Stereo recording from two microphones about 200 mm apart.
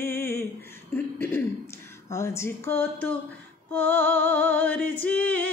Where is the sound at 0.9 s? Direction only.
10° left (ahead or behind).